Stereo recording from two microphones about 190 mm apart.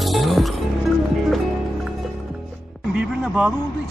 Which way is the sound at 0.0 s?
Centre (ahead or behind).